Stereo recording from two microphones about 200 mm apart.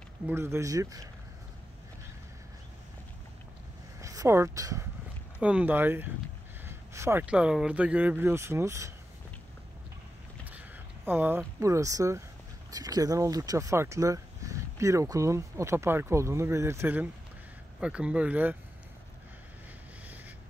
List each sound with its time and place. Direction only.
0.3 s speech: 10° right (ahead or behind)
4.0 s speech: 15° right (ahead or behind)
11.1 s speech: 10° right (ahead or behind)